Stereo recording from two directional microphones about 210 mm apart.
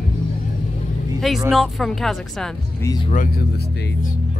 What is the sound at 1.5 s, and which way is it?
Speech, centre (ahead or behind).